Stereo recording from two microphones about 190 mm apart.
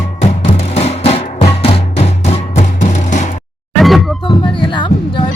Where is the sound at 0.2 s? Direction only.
35° left (ahead or behind).